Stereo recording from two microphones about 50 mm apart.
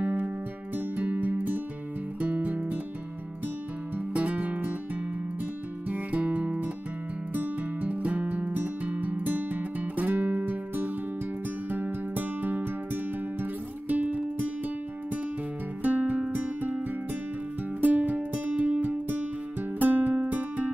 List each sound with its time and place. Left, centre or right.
0.0 s music: right
4.1 s music: right
5.9 s music: right
15.8 s music: right